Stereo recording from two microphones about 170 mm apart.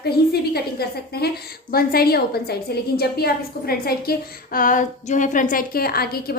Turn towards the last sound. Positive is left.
turn(degrees=65)  # may be behind; listen again after turning